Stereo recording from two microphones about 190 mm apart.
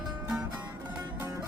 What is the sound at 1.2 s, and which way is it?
Music, 15° right (ahead or behind).